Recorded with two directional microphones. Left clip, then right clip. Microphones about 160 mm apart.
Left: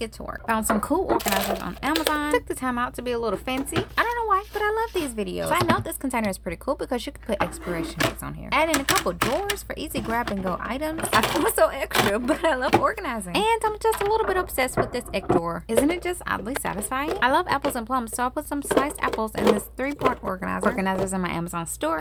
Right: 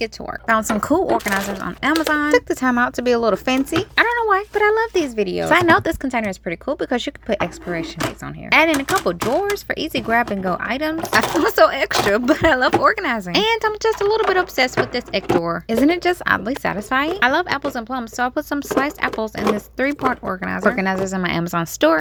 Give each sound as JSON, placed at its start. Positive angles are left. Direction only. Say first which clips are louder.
{"t": 0.0, "sound": "speech", "louder": "right 7 dB", "side_deg": -25}
{"t": 1.2, "sound": "speech", "louder": "right 3 dB", "side_deg": -20}
{"t": 5.5, "sound": "speech", "louder": "right 9 dB", "side_deg": -40}
{"t": 6.0, "sound": "speech", "louder": "right 4 dB", "side_deg": -15}
{"t": 8.4, "sound": "speech", "louder": "right 6 dB", "side_deg": -30}
{"t": 15.8, "sound": "speech", "louder": "right 8 dB", "side_deg": -35}
{"t": 17.2, "sound": "speech", "louder": "right 3 dB", "side_deg": -15}
{"t": 19.8, "sound": "speech", "louder": "right 5 dB", "side_deg": -25}